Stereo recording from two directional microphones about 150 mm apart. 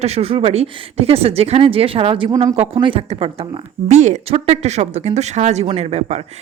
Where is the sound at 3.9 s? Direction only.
50° right (ahead or behind).